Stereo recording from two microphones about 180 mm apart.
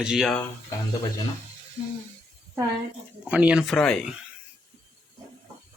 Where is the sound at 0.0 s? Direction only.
5° right (ahead or behind).